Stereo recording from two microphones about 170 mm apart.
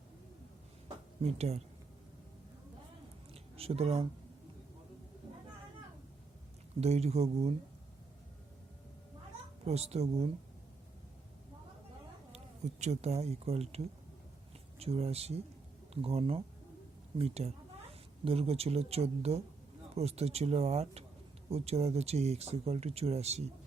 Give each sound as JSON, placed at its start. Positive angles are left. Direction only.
{"t": 1.2, "sound": "speech", "side_deg": -40}
{"t": 3.5, "sound": "speech", "side_deg": -35}
{"t": 6.7, "sound": "speech", "side_deg": -40}
{"t": 9.6, "sound": "speech", "side_deg": -40}
{"t": 12.3, "sound": "speech", "side_deg": -40}